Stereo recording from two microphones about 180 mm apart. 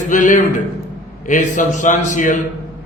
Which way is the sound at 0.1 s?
45° left (ahead or behind).